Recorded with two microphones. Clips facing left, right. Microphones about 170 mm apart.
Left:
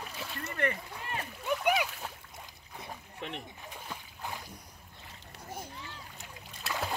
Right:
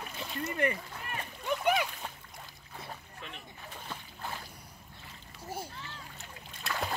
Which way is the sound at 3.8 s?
10° left (ahead or behind).